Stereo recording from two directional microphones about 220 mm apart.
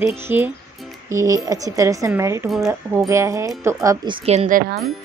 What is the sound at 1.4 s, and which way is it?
A woman's voice, 15° right (ahead or behind).